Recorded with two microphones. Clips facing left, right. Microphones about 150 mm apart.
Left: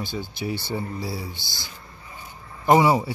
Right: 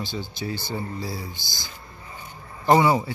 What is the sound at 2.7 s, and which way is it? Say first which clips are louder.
Speech: left 1 dB; 25° left (ahead or behind).